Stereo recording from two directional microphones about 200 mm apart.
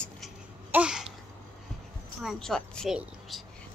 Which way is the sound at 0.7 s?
5° right (ahead or behind).